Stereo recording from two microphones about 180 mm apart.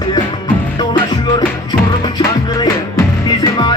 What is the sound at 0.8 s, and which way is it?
Music, 25° left (ahead or behind).